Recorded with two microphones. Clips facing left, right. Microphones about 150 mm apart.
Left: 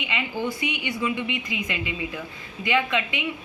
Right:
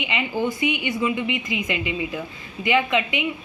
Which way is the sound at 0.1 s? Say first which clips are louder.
Right 4 dB; 20° right (ahead or behind).